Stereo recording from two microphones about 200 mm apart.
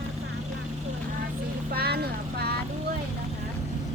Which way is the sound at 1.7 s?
50° right (ahead or behind).